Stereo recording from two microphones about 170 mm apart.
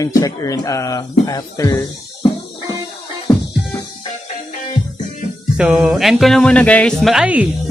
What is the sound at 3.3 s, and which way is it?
Music, 25° left (ahead or behind).